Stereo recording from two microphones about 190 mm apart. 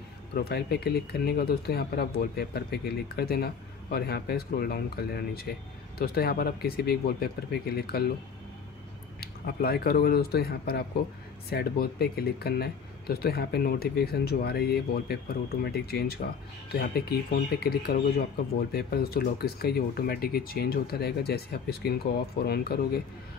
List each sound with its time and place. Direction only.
0.3 s speech: 55° left (ahead or behind)
9.2 s speech: 55° left (ahead or behind)